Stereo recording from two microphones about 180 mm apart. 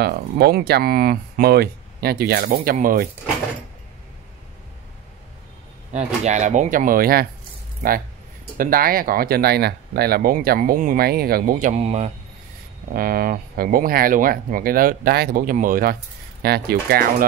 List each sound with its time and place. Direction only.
0.0 s speech: 60° right (ahead or behind)
5.9 s speech: 40° right (ahead or behind); by 7.2 s 55° right (ahead or behind)
8.5 s speech: 55° right (ahead or behind)
11.7 s speech: 35° right (ahead or behind)
12.9 s speech: 55° right (ahead or behind)